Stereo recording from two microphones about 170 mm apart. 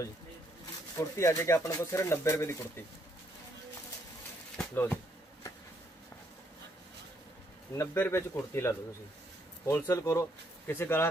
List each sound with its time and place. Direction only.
0.9 s speech: 15° left (ahead or behind)
4.6 s a sound: 10° left (ahead or behind)
7.7 s speech: 15° left (ahead or behind)